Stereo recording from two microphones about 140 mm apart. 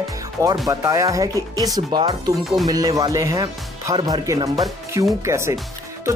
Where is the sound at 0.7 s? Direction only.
25° right (ahead or behind).